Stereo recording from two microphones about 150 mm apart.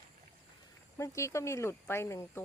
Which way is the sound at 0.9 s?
20° left (ahead or behind).